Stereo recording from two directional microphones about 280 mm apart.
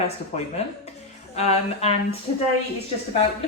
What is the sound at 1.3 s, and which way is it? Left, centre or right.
Speech, left.